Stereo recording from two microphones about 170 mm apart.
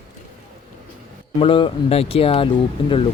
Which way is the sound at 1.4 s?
30° left (ahead or behind).